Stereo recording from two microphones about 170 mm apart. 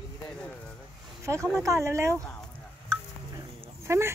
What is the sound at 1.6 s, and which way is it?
Speech, 15° right (ahead or behind).